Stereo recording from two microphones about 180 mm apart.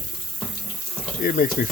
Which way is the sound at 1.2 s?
50° left (ahead or behind).